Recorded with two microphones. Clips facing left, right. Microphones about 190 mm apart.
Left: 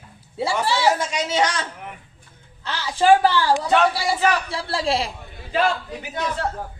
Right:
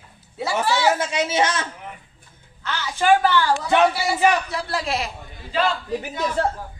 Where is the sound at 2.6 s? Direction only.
30° left (ahead or behind).